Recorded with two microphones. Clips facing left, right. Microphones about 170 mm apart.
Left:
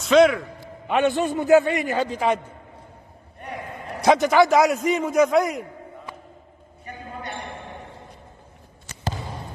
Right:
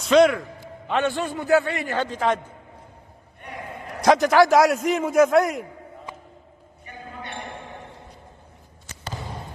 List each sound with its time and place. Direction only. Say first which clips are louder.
0.0 s a man's voice: left 1 dB; centre (ahead or behind)
0.8 s a man's voice: left 3 dB; 15° left (ahead or behind)
2.0 s a man's voice: left 1 dB; 5° left (ahead or behind)
4.0 s a man's voice: even; centre (ahead or behind)